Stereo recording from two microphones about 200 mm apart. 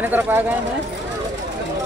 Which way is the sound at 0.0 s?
10° right (ahead or behind).